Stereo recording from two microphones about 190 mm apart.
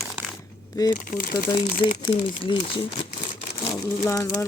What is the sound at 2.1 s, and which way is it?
Speech, 25° left (ahead or behind).